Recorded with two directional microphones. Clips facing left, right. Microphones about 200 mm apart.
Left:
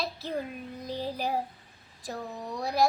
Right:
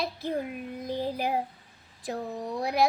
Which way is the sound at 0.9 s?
15° right (ahead or behind).